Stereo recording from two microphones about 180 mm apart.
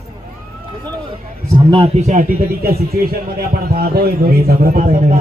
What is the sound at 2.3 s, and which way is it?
A man's voice, 60° right (ahead or behind).